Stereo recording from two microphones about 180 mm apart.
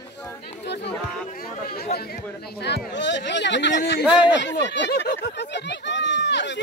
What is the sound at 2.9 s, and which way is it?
Speech, 80° left.